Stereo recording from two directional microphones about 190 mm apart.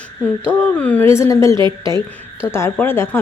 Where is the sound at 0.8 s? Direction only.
10° left (ahead or behind).